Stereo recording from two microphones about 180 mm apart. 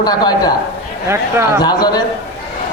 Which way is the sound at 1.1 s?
15° right (ahead or behind).